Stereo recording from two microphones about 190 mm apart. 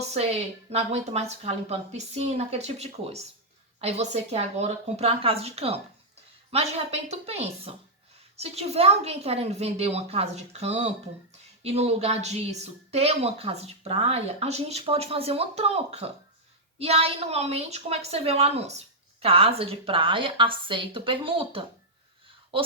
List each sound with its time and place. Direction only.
0.1 s a woman's voice: 35° right (ahead or behind)